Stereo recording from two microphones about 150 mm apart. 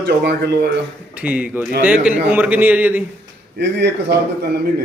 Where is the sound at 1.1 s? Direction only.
10° right (ahead or behind).